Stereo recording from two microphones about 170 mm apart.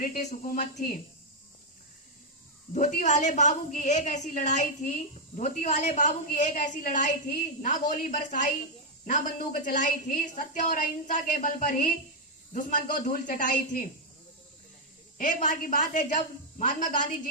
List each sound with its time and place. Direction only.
0.0 s a woman's voice: 50° left (ahead or behind)
2.7 s a woman's voice: 50° left (ahead or behind)
15.2 s a woman's voice: 50° left (ahead or behind)